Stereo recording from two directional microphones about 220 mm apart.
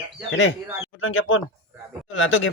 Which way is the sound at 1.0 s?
65° left (ahead or behind).